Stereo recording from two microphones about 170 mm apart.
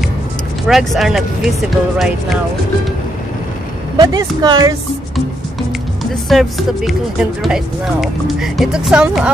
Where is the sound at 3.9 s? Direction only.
25° right (ahead or behind).